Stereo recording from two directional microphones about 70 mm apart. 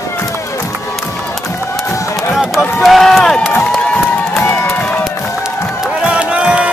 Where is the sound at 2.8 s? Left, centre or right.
Centre.